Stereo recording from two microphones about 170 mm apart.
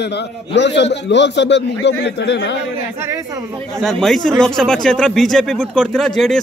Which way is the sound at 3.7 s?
Centre (ahead or behind).